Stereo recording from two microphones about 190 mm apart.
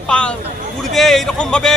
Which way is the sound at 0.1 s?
5° left (ahead or behind).